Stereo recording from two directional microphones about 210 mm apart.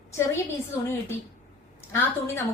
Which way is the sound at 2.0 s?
10° left (ahead or behind).